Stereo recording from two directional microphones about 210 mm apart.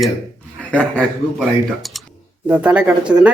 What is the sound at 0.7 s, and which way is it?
Speech, 5° left (ahead or behind).